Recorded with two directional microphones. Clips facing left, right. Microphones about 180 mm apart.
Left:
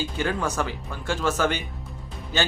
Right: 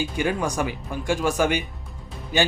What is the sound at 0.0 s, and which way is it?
Speech, 15° right (ahead or behind).